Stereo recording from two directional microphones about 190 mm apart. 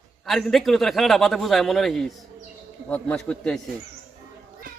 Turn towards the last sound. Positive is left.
turn(degrees=5)  # may be behind; listen again after turning